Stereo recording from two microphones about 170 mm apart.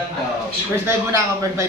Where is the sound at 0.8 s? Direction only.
15° right (ahead or behind).